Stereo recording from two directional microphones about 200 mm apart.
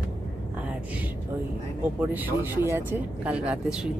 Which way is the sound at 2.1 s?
10° right (ahead or behind).